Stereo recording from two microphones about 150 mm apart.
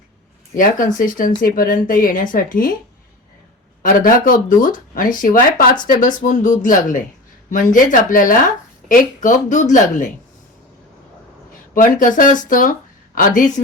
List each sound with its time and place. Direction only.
0.5 s speech: 65° left (ahead or behind)
3.8 s speech: 70° left (ahead or behind)
11.7 s speech: 65° left (ahead or behind)